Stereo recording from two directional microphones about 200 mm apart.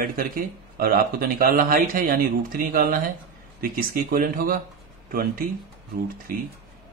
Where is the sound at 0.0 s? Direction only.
45° right (ahead or behind).